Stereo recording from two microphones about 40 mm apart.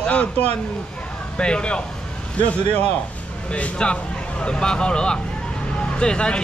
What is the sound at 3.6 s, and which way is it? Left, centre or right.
Speech, left.